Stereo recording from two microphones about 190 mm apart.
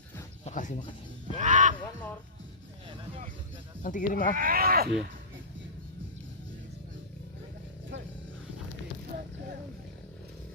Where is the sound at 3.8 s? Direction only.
45° left (ahead or behind).